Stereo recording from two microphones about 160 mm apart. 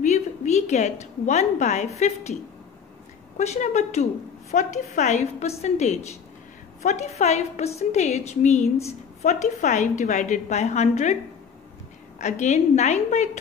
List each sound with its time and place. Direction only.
0.0 s a sound: 45° left (ahead or behind)
2.0 s a woman's voice: 45° left (ahead or behind)
3.3 s a woman's voice: 45° left (ahead or behind)
12.2 s a woman's voice: 45° left (ahead or behind)